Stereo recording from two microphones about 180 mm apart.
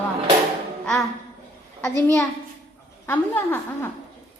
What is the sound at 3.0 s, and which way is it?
Speech, 10° left (ahead or behind).